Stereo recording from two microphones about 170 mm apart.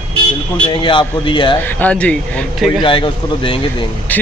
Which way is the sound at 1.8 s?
10° left (ahead or behind).